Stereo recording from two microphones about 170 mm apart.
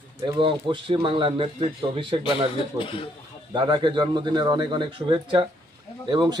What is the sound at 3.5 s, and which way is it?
A man's voice, 30° right (ahead or behind).